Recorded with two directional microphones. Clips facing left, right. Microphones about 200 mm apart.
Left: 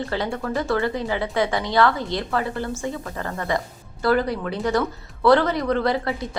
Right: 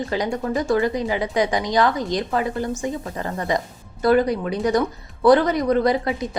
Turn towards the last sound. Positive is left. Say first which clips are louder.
# right 2 dB
turn(degrees=-20)  # may be behind; listen again after turning